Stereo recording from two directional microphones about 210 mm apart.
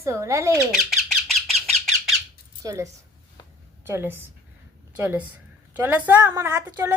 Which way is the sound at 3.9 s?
10° right (ahead or behind).